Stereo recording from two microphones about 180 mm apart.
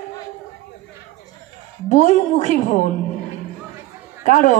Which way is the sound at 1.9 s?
45° left (ahead or behind).